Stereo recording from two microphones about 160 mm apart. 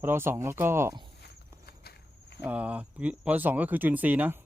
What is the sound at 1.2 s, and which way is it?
Walk, 85° left.